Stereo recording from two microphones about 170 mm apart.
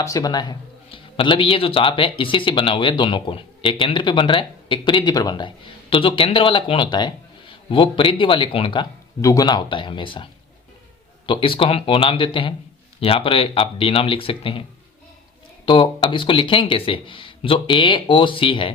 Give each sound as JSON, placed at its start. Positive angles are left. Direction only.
{"t": 0.0, "sound": "a man's voice", "side_deg": 20}
{"t": 11.3, "sound": "speech", "side_deg": 30}
{"t": 15.6, "sound": "a man's voice", "side_deg": 30}